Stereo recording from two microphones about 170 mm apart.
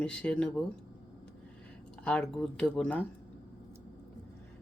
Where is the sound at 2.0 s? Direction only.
5° left (ahead or behind).